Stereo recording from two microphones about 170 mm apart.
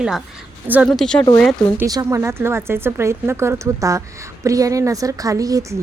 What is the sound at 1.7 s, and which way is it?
Speech, 20° right (ahead or behind).